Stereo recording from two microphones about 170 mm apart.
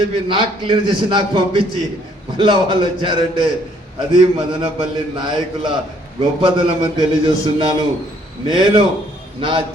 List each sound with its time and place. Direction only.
0.0 s a man's voice: 30° right (ahead or behind)